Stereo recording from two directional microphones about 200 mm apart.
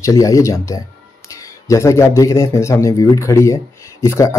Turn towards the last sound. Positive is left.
turn(degrees=15)  # may be behind; listen again after turning